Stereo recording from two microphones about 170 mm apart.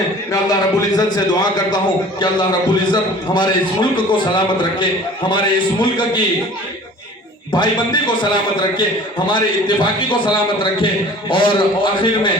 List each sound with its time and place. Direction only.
0.3 s a man's voice: 20° left (ahead or behind)
7.5 s a man's voice: 25° left (ahead or behind)